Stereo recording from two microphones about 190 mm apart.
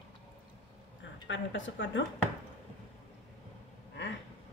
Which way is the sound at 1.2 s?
85° left.